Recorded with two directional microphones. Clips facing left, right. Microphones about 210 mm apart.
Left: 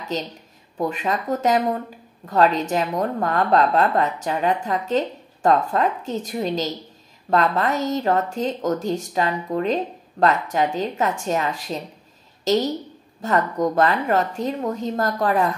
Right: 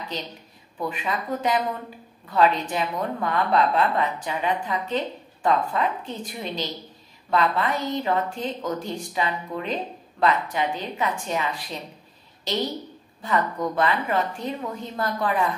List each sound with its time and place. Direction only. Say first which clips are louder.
0.7 s a woman's voice: left 5 dB; 45° left (ahead or behind)
13.2 s a woman's voice: left 4 dB; 45° left (ahead or behind)